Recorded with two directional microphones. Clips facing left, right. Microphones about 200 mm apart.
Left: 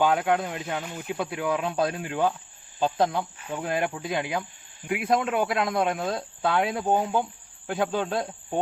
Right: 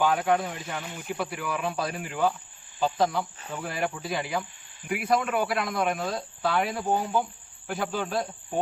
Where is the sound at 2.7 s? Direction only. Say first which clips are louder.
Left 1 dB; 20° left (ahead or behind).